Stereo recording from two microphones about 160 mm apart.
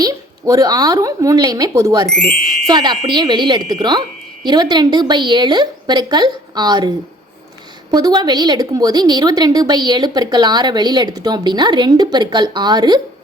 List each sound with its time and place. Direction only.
0.0 s a woman's voice: 20° right (ahead or behind)
2.0 s speech: 5° left (ahead or behind)
2.6 s a woman's voice: 25° right (ahead or behind)